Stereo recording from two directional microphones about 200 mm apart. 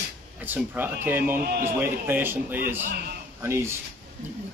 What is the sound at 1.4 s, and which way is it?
Speech, 45° right (ahead or behind).